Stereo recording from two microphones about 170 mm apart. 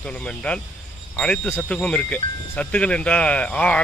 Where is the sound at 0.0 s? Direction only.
5° left (ahead or behind).